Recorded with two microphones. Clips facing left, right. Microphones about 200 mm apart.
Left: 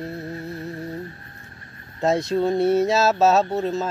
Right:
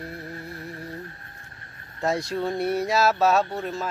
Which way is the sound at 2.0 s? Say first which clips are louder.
Left 5 dB; 20° left (ahead or behind).